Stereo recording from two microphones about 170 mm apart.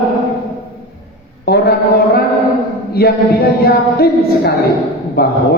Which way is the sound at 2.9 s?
65° left (ahead or behind).